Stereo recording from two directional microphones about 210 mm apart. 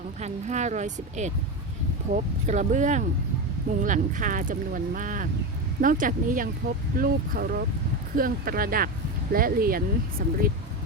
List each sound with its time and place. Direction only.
0.2 s speech: 35° right (ahead or behind)